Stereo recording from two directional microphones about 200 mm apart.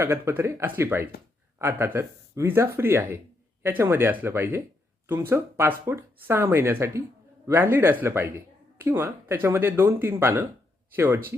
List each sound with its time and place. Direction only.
0.0 s speech: 10° right (ahead or behind)